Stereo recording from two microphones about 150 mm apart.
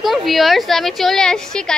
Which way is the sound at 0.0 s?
Centre (ahead or behind).